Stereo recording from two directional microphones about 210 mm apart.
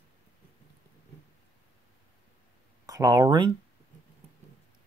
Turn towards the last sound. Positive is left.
turn(degrees=-20)  # may be behind; listen again after turning